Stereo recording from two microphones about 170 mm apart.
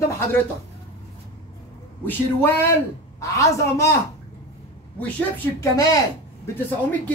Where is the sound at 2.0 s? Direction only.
15° left (ahead or behind).